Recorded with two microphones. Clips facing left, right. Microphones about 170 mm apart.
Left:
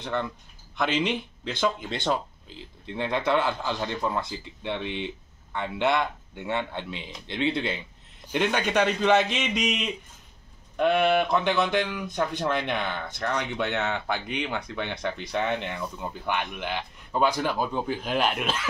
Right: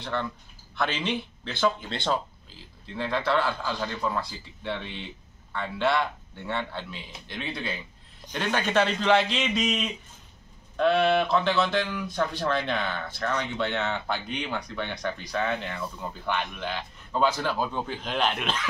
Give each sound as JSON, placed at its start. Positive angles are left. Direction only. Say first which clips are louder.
{"t": 0.0, "sound": "speech", "louder": "left 1 dB", "side_deg": 15}
{"t": 8.3, "sound": "speech", "louder": "left 3 dB", "side_deg": 15}